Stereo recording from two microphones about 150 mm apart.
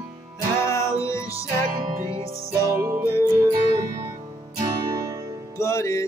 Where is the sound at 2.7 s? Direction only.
20° right (ahead or behind).